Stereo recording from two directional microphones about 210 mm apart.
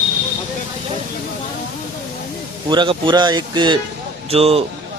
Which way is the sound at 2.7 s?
20° right (ahead or behind).